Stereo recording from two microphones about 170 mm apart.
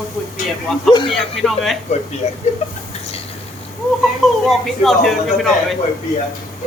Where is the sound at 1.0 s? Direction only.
Centre (ahead or behind).